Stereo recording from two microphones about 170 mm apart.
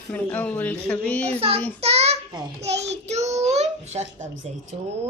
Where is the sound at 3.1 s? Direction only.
40° right (ahead or behind).